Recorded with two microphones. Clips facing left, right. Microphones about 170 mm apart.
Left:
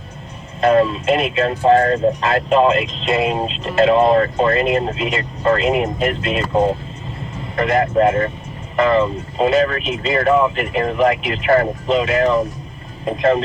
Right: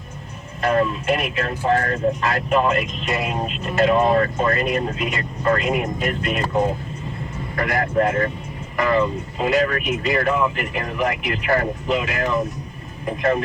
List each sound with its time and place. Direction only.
0.6 s speech: 25° left (ahead or behind)
7.5 s speech: 25° left (ahead or behind)